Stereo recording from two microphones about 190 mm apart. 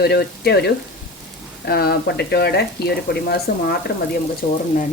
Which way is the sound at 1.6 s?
55° left (ahead or behind).